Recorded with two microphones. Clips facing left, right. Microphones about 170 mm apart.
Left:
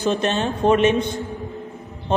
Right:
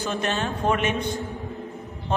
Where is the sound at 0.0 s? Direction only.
25° left (ahead or behind).